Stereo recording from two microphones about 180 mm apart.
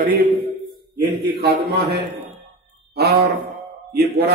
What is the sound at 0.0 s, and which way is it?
A man's voice, 55° right (ahead or behind).